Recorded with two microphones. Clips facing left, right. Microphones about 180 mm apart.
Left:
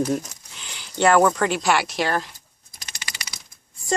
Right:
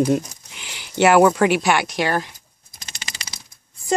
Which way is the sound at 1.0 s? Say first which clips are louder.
Right 3 dB; 10° right (ahead or behind).